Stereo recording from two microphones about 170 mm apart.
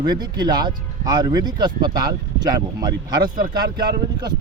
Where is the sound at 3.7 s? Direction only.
25° right (ahead or behind).